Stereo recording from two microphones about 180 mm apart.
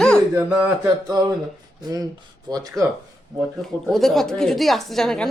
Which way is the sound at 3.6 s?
Centre (ahead or behind).